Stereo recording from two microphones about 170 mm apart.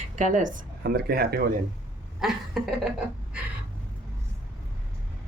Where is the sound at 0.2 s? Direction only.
50° right (ahead or behind).